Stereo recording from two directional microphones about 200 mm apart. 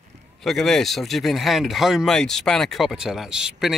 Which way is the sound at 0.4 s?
Centre (ahead or behind).